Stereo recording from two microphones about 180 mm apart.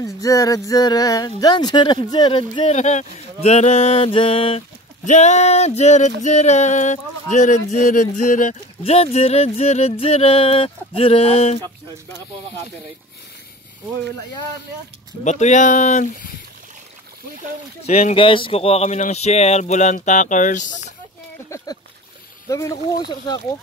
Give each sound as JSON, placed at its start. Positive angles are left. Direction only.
{"t": 0.0, "sound": "speech", "side_deg": 20}
{"t": 2.7, "sound": "speech", "side_deg": 40}
{"t": 15.2, "sound": "speech", "side_deg": 40}
{"t": 17.8, "sound": "speech", "side_deg": 35}
{"t": 21.5, "sound": "a sound", "side_deg": 15}
{"t": 22.5, "sound": "speech", "side_deg": 20}